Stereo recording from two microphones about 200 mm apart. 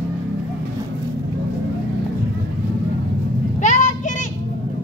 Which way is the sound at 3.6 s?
40° left (ahead or behind).